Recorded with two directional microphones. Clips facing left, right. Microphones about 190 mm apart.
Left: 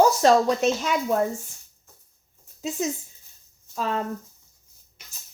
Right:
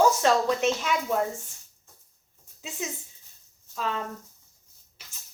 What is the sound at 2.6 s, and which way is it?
Speech, 40° left (ahead or behind).